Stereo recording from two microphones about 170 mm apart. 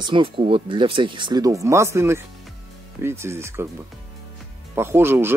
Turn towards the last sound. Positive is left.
turn(degrees=-15)  # may be behind; listen again after turning